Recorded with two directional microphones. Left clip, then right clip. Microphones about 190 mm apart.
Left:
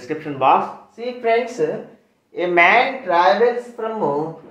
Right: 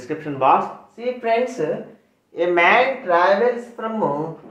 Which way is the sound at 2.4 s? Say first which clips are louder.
Left 1 dB; 15° left (ahead or behind).